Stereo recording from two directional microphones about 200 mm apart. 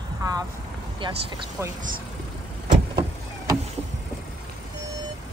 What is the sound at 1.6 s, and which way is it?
Speech, 10° right (ahead or behind).